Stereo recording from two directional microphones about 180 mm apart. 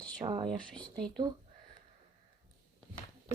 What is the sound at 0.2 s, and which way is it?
Speech, 35° right (ahead or behind).